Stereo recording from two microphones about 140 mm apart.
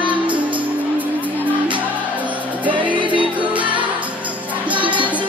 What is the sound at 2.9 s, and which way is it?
Music, 35° right (ahead or behind).